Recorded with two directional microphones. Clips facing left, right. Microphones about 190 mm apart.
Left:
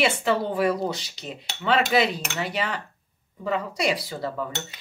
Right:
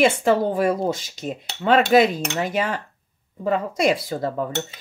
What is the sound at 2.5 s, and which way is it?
A woman's voice, 45° right (ahead or behind).